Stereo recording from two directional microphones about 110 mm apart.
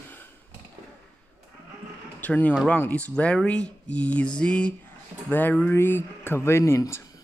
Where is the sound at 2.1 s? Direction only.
15° left (ahead or behind).